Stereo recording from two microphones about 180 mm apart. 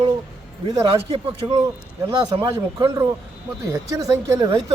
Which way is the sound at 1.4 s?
25° right (ahead or behind).